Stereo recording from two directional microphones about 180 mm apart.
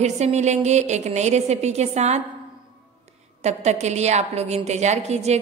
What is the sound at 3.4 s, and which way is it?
A woman's voice, 40° right (ahead or behind).